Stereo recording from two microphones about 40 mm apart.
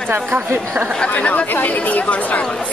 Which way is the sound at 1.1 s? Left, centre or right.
Left.